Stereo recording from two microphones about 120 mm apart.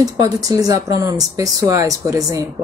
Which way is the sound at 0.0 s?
30° right (ahead or behind).